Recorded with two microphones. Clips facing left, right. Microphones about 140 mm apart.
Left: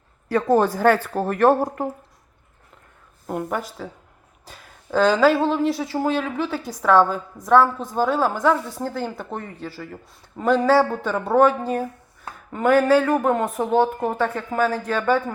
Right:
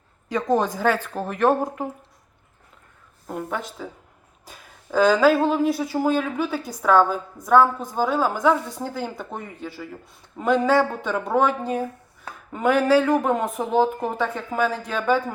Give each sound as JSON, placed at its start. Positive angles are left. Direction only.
{"t": 0.4, "sound": "speech", "side_deg": 5}
{"t": 3.2, "sound": "speech", "side_deg": 10}
{"t": 10.3, "sound": "speech", "side_deg": 5}